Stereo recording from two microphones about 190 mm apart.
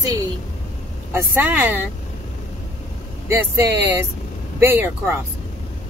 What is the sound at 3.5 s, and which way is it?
Speech, 15° right (ahead or behind).